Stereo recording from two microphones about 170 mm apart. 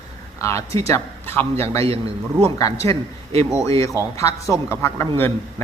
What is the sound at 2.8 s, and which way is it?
A man's voice, 15° left (ahead or behind).